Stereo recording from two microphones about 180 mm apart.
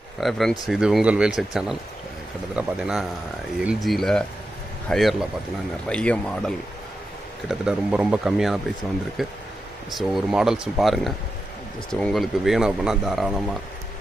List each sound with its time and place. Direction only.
0.2 s speech: centre (ahead or behind)
7.4 s speech: 5° right (ahead or behind)